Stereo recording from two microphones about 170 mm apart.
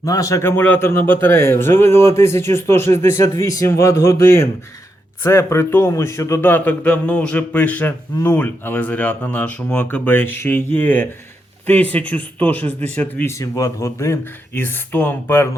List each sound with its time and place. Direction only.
0.0 s a man's voice: 20° left (ahead or behind)